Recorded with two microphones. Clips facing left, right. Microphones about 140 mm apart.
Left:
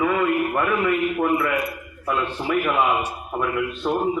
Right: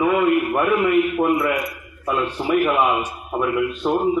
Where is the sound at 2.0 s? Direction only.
15° right (ahead or behind).